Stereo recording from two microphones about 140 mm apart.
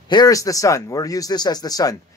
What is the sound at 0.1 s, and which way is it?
Speech, 25° left (ahead or behind).